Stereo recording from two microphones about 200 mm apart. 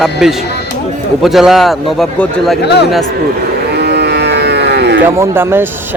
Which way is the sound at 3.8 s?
55° right (ahead or behind).